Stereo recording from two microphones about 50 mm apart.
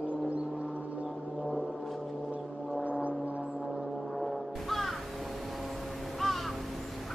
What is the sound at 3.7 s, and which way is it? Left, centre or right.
Music, centre.